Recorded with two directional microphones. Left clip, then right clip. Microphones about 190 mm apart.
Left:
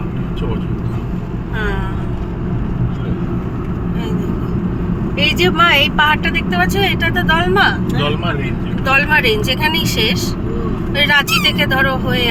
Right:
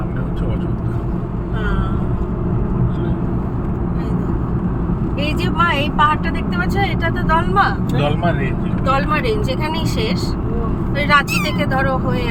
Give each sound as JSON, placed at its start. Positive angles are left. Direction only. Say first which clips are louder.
{"t": 5.2, "sound": "speech", "louder": "left 6 dB", "side_deg": 25}
{"t": 8.9, "sound": "speech", "louder": "left 5 dB", "side_deg": 10}